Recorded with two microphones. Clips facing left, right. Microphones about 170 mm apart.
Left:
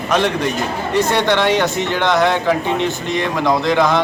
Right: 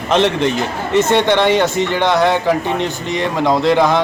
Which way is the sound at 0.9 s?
20° right (ahead or behind).